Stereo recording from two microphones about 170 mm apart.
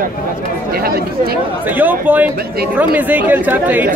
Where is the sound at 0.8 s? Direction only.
60° right (ahead or behind).